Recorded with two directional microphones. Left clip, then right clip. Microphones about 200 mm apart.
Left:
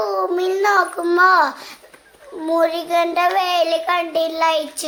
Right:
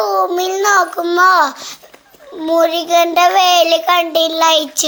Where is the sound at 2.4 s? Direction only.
10° right (ahead or behind).